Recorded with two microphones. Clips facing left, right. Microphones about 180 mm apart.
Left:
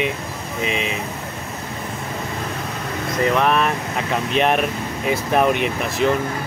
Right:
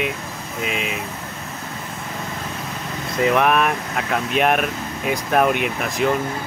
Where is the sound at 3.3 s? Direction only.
10° right (ahead or behind).